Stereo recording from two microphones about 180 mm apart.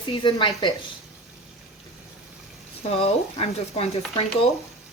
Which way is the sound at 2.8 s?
35° left (ahead or behind).